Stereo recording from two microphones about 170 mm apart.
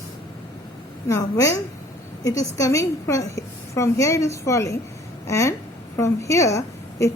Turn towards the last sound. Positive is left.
turn(degrees=20)  # may be behind; listen again after turning